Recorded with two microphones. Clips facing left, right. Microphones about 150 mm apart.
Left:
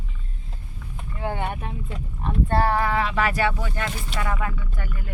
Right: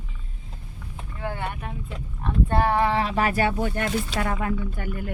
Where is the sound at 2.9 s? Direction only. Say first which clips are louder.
Even; 35° right (ahead or behind).